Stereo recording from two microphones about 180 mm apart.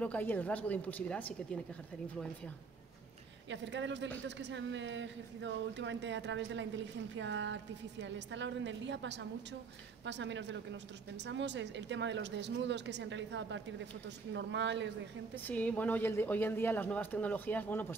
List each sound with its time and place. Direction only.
0.0 s speech: 10° left (ahead or behind)
3.4 s speech: 85° right
11.1 s speech: 75° right (ahead or behind)
15.3 s speech: 10° left (ahead or behind)